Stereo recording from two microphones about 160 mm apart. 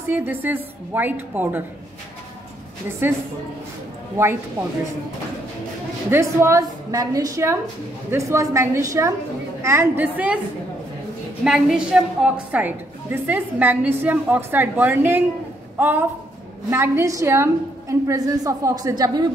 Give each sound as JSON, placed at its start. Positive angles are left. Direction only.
{"t": 0.1, "sound": "a woman's voice", "side_deg": -15}
{"t": 6.0, "sound": "a woman's voice", "side_deg": -15}
{"t": 11.4, "sound": "a woman's voice", "side_deg": -5}